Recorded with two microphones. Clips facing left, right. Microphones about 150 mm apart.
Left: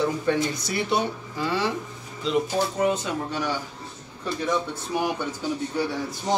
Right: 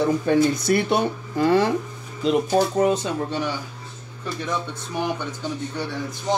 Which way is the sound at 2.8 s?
35° right (ahead or behind).